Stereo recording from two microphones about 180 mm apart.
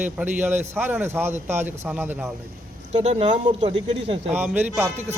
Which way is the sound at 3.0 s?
35° right (ahead or behind).